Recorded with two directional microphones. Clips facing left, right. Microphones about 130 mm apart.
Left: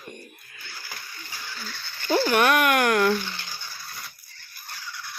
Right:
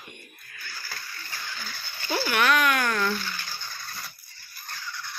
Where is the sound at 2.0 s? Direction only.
45° left (ahead or behind); by 3.1 s 65° left (ahead or behind).